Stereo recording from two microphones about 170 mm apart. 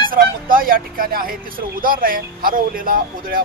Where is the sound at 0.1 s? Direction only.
55° right (ahead or behind).